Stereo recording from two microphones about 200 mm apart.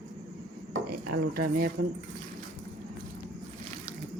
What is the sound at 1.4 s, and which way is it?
Speech, 45° right (ahead or behind).